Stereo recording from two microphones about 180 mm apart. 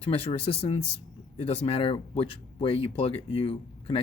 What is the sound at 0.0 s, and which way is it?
Speech, 35° left (ahead or behind).